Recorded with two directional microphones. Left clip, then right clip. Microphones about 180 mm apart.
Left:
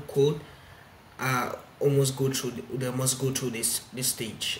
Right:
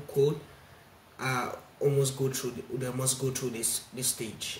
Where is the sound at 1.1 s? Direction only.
5° left (ahead or behind).